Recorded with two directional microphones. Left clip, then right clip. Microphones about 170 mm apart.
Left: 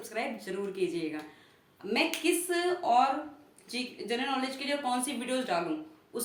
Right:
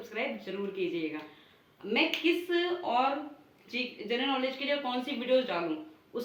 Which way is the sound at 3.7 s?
35° left (ahead or behind).